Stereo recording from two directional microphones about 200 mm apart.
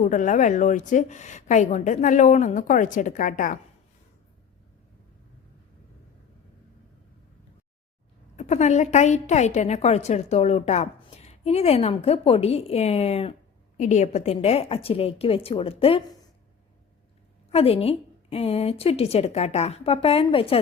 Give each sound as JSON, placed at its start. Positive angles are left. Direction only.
{"t": 0.0, "sound": "a woman's voice", "side_deg": 40}
{"t": 8.4, "sound": "a woman's voice", "side_deg": 35}
{"t": 17.5, "sound": "a woman's voice", "side_deg": 30}